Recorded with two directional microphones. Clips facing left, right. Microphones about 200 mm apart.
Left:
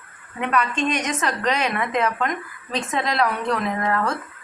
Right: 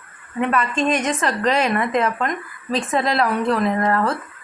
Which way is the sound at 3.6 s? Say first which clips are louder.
Right 5 dB; 40° right (ahead or behind).